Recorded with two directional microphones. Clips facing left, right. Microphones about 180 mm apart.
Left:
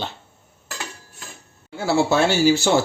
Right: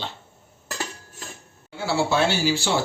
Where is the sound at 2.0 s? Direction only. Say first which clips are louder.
Left 5 dB; 45° left (ahead or behind).